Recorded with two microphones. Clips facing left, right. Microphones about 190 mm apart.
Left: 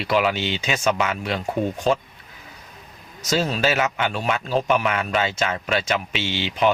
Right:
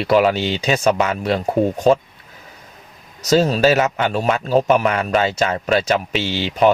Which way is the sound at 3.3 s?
40° right (ahead or behind).